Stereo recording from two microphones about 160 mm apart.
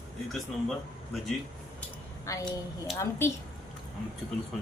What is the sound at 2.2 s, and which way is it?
A woman's voice, 20° left (ahead or behind).